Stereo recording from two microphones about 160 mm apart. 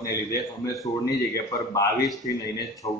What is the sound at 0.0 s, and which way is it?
Speech, 20° left (ahead or behind).